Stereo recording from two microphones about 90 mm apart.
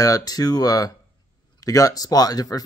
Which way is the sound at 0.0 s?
45° left (ahead or behind).